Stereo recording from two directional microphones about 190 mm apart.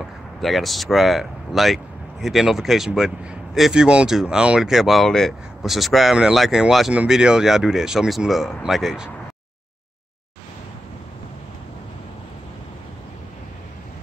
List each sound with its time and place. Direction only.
0.4 s speech: centre (ahead or behind)